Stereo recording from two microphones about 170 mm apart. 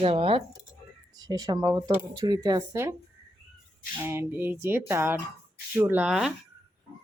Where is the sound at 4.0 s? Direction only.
15° right (ahead or behind).